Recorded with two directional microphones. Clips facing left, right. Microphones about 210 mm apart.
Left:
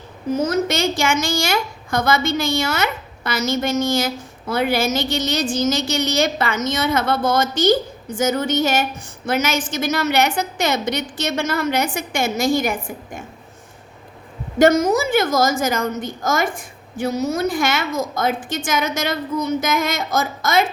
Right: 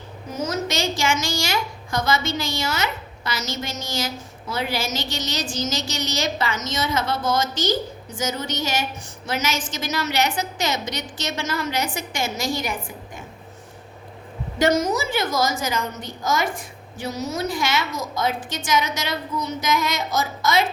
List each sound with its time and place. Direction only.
0.4 s a woman's voice: 55° left (ahead or behind)
14.6 s a woman's voice: 50° left (ahead or behind)